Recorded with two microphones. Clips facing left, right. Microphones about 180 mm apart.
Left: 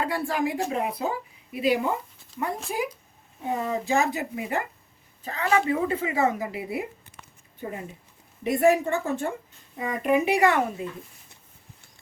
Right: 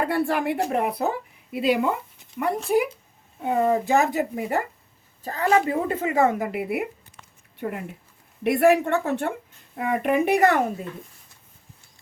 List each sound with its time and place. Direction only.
0.0 s a woman's voice: 60° right (ahead or behind)